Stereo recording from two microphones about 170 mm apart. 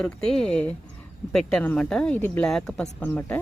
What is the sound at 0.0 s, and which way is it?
Speech, 5° left (ahead or behind).